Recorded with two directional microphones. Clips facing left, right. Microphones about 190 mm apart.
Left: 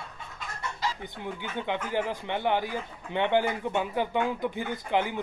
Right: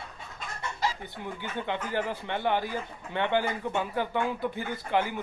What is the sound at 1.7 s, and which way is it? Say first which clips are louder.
Speech: left 2 dB; 15° left (ahead or behind).